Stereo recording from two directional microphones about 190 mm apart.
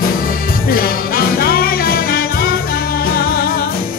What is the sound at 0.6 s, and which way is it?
Music, 50° left (ahead or behind).